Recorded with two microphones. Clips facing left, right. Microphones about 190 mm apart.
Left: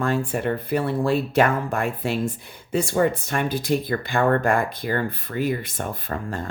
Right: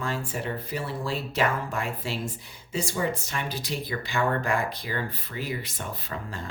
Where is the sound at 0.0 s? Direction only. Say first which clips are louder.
Left 8 dB; 55° left (ahead or behind).